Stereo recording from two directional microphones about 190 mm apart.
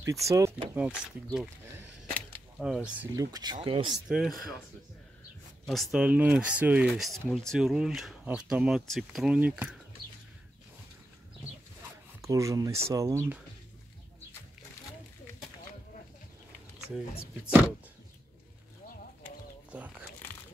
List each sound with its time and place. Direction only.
0.0 s speech: 15° right (ahead or behind)
2.6 s speech: 5° right (ahead or behind)
3.2 s speech: 20° right (ahead or behind)
4.1 s speech: centre (ahead or behind)
5.7 s speech: centre (ahead or behind)
12.2 s speech: 15° right (ahead or behind)